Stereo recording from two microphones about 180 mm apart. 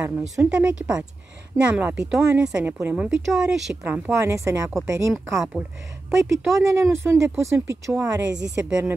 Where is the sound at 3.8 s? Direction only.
15° right (ahead or behind).